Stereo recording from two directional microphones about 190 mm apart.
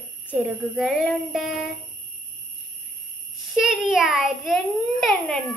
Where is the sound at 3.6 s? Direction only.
Centre (ahead or behind).